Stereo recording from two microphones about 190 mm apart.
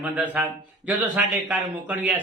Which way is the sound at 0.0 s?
10° right (ahead or behind).